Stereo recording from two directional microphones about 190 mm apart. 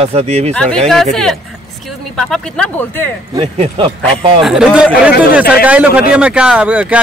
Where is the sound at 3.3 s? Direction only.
30° right (ahead or behind).